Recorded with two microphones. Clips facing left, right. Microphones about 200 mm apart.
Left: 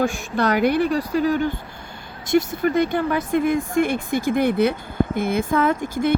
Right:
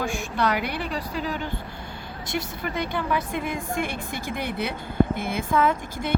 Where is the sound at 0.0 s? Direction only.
45° left (ahead or behind).